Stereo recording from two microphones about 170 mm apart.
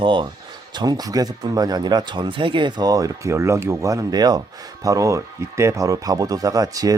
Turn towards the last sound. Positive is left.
turn(degrees=-20)  # may be behind; listen again after turning